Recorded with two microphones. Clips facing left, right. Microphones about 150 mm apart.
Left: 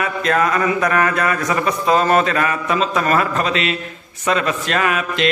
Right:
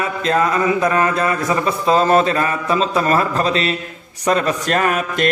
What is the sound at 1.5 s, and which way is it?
A man's voice, 30° right (ahead or behind).